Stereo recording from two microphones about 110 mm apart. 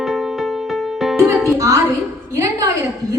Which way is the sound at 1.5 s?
30° right (ahead or behind).